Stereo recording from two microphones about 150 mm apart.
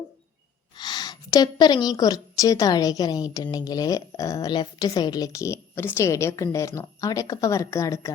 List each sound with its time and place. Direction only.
0.8 s a woman's voice: 30° left (ahead or behind)